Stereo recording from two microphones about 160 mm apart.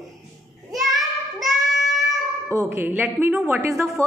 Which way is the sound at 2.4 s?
15° right (ahead or behind).